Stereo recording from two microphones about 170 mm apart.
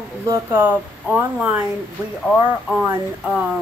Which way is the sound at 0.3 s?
15° right (ahead or behind).